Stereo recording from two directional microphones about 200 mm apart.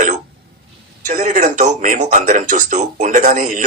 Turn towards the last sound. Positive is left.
turn(degrees=-40)  # may be behind; listen again after turning